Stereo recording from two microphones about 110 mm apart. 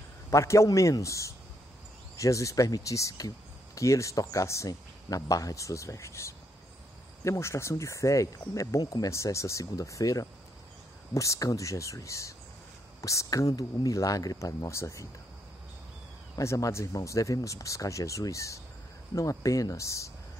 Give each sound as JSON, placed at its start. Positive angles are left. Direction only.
{"t": 0.3, "sound": "speech", "side_deg": 25}
{"t": 16.3, "sound": "speech", "side_deg": 30}